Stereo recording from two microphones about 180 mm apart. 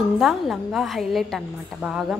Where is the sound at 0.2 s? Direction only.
Centre (ahead or behind).